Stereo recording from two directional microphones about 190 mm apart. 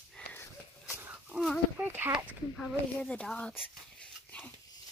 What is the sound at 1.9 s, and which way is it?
Speech, 10° right (ahead or behind).